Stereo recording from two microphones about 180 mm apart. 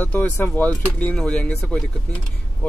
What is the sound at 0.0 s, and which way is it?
Speech, 10° left (ahead or behind).